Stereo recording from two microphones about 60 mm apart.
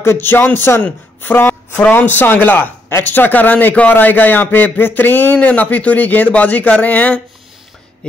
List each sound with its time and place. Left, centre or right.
0.0 s a man's voice: left